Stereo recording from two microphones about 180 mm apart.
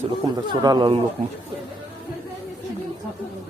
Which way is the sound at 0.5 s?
25° right (ahead or behind).